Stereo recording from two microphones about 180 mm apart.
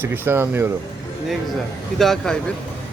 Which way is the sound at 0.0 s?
10° right (ahead or behind).